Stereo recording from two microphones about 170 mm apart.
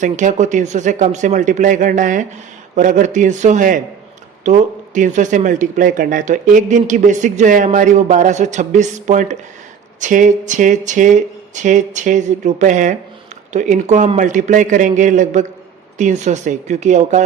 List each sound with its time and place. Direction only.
0.0 s speech: 45° right (ahead or behind)